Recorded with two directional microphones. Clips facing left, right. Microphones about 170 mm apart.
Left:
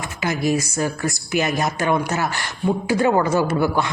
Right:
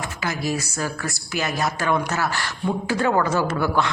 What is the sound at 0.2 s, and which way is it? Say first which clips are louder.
Speech: left 6 dB; 20° left (ahead or behind).